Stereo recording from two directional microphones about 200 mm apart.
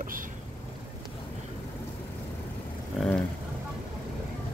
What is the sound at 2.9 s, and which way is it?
Vehicle, centre (ahead or behind).